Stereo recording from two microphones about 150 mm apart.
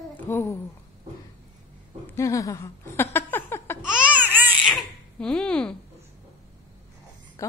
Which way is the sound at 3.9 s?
10° right (ahead or behind).